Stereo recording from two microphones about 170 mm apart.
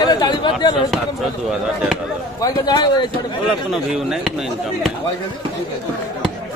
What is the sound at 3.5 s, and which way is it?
Speech, centre (ahead or behind).